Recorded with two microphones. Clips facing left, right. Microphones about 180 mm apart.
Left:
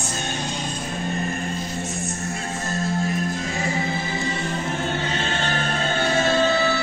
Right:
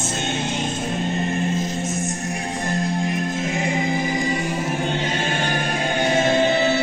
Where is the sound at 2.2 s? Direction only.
15° right (ahead or behind).